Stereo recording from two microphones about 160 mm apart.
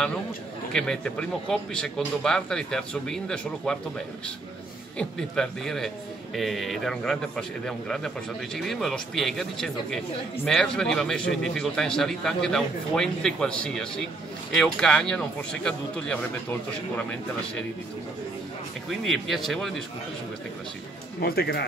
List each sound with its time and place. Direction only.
0.7 s a man's voice: 5° left (ahead or behind)
4.9 s a man's voice: 5° left (ahead or behind)
18.9 s a man's voice: centre (ahead or behind)
21.2 s speech: 75° left (ahead or behind)